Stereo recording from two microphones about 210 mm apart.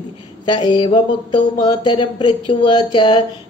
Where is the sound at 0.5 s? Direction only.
20° left (ahead or behind).